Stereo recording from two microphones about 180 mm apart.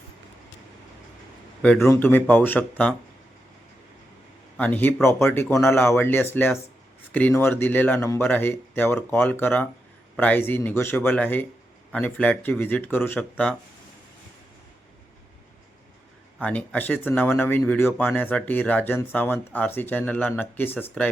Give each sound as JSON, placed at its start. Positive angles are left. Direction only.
{"t": 1.6, "sound": "a man's voice", "side_deg": 5}
{"t": 4.5, "sound": "speech", "side_deg": 10}
{"t": 16.4, "sound": "speech", "side_deg": 10}